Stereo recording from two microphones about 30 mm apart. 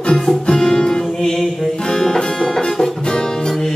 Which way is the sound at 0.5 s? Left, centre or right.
Centre.